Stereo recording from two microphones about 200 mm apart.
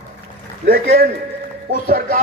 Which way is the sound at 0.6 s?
50° right (ahead or behind).